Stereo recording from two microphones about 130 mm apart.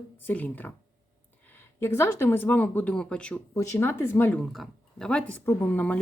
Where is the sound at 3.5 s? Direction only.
25° left (ahead or behind).